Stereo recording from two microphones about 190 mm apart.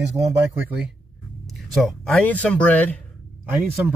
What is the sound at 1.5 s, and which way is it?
Speech, centre (ahead or behind).